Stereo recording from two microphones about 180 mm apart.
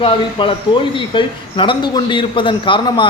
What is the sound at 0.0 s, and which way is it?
Speech, 30° left (ahead or behind).